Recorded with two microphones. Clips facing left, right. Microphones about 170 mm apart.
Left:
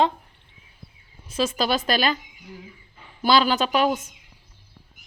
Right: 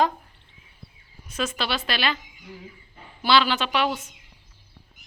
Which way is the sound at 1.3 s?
30° left (ahead or behind).